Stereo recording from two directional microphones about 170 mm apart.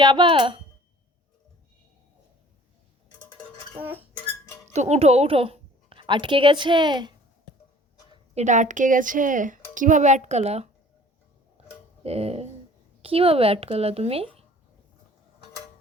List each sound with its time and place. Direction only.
0.0 s speech: 30° right (ahead or behind)
3.8 s a sound: 10° right (ahead or behind)
4.7 s a woman's voice: 40° right (ahead or behind); by 7.1 s 25° right (ahead or behind)
8.1 s a woman's voice: 40° right (ahead or behind)
12.0 s speech: 35° right (ahead or behind)